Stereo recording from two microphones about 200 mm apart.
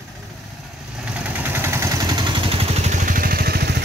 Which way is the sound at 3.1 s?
45° right (ahead or behind).